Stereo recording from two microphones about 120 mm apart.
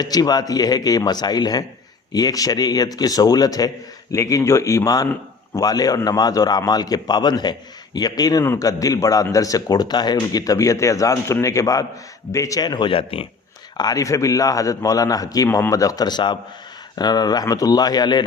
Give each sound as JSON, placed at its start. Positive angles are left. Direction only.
{"t": 0.0, "sound": "a man's voice", "side_deg": 35}
{"t": 13.7, "sound": "a man's voice", "side_deg": 30}